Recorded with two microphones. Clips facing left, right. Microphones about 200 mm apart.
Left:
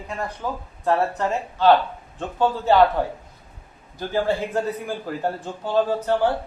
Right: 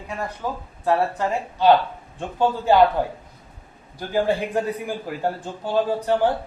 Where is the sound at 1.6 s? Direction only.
15° right (ahead or behind).